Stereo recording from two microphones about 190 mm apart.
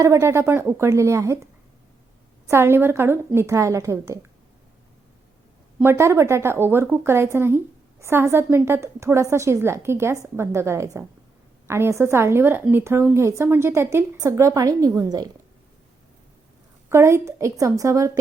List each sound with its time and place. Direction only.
0.0 s speech: 15° right (ahead or behind)
2.5 s speech: 15° right (ahead or behind)
5.8 s speech: 15° right (ahead or behind)
16.9 s speech: 15° right (ahead or behind)